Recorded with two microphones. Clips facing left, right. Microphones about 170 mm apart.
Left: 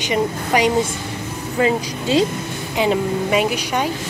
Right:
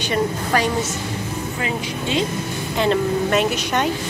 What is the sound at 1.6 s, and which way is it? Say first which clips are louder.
Speech: left 8 dB; 35° left (ahead or behind).